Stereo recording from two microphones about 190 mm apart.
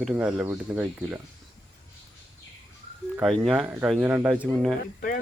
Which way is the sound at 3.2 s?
Centre (ahead or behind).